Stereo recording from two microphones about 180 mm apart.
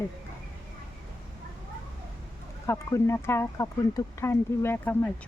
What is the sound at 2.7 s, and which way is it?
Speech, 15° left (ahead or behind).